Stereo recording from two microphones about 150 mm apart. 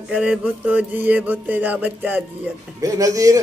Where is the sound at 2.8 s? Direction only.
20° right (ahead or behind).